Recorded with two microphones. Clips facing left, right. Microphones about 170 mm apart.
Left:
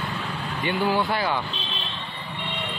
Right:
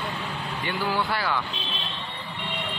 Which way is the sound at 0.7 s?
20° left (ahead or behind).